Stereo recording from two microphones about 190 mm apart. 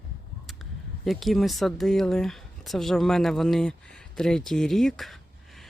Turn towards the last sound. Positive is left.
turn(degrees=0)  # may be behind; listen again after turning